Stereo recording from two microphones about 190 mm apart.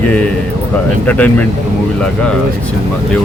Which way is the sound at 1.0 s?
10° left (ahead or behind).